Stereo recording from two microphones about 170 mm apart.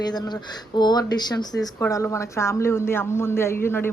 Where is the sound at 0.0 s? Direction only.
25° left (ahead or behind).